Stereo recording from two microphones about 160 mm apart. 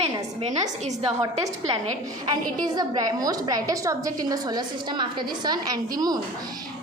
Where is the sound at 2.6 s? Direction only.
25° right (ahead or behind).